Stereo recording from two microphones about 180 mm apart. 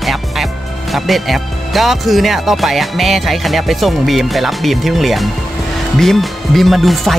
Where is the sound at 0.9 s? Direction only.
Centre (ahead or behind).